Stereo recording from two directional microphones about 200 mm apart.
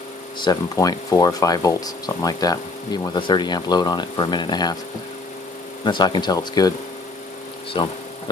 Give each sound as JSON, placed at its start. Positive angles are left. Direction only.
{"t": 0.4, "sound": "speech", "side_deg": 20}
{"t": 5.9, "sound": "speech", "side_deg": 20}
{"t": 7.7, "sound": "speech", "side_deg": 25}